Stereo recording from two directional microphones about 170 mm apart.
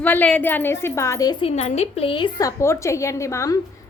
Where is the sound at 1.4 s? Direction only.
40° left (ahead or behind).